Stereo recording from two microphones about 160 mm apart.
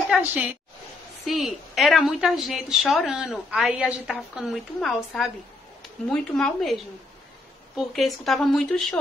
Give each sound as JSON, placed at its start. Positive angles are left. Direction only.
{"t": 0.1, "sound": "a woman's voice", "side_deg": -10}